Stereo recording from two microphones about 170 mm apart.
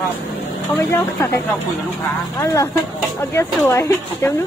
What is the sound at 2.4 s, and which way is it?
Speech, 20° left (ahead or behind).